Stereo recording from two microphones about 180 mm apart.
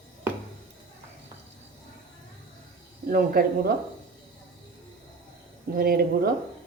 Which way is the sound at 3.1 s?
55° right (ahead or behind).